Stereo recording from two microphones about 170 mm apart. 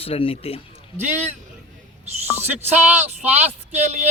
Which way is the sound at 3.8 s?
40° right (ahead or behind).